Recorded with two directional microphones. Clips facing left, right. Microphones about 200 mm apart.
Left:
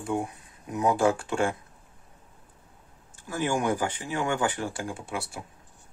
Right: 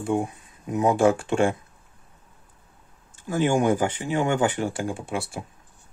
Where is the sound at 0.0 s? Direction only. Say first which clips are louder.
Right 5 dB; 25° right (ahead or behind).